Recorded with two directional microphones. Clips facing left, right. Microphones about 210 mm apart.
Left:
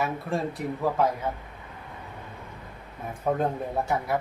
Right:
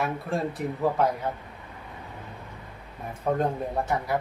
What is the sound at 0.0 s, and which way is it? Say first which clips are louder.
Speech: even; centre (ahead or behind).